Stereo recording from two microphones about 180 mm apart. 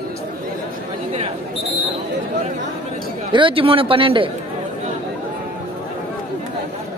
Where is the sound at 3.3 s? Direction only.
30° right (ahead or behind).